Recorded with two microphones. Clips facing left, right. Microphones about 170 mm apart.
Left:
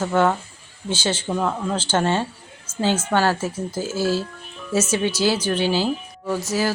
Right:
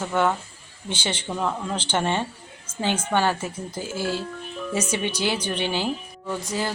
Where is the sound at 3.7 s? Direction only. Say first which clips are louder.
Left 5 dB; 90° left.